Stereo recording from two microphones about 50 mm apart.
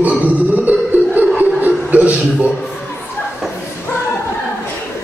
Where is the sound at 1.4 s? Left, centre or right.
Right.